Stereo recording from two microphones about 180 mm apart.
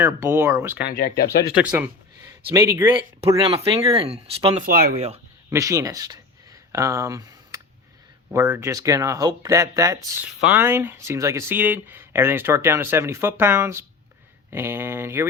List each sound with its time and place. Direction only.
0.0 s speech: 15° right (ahead or behind)
0.9 s speech: 60° left (ahead or behind)
2.6 s speech: 15° right (ahead or behind)
3.3 s speech: 30° right (ahead or behind)
4.6 s speech: 55° right (ahead or behind)
4.9 s speech: 35° right (ahead or behind)
5.5 s a sound: 15° right (ahead or behind)
8.3 s speech: 15° right (ahead or behind)